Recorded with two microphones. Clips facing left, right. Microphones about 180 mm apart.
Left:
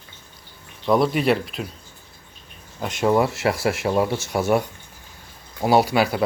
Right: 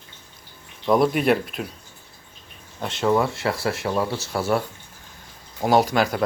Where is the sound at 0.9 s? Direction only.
Centre (ahead or behind).